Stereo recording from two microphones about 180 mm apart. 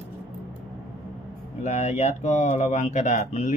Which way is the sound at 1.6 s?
40° left (ahead or behind).